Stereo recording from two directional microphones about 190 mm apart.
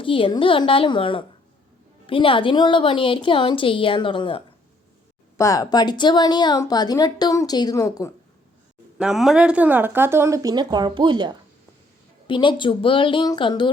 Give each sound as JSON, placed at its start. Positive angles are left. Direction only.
{"t": 0.0, "sound": "speech", "side_deg": 25}
{"t": 9.0, "sound": "speech", "side_deg": 0}
{"t": 12.3, "sound": "speech", "side_deg": 25}